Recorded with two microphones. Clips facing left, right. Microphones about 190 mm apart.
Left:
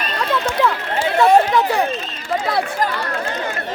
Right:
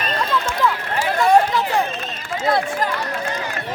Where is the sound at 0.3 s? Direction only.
65° left (ahead or behind).